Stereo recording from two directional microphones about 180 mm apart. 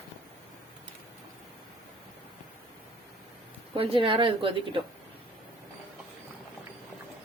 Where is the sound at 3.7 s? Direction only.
30° right (ahead or behind).